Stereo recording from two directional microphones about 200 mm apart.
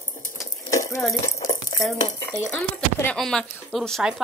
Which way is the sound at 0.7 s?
15° left (ahead or behind).